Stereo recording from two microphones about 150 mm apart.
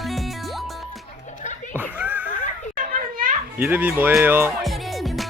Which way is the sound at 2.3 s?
60° left (ahead or behind).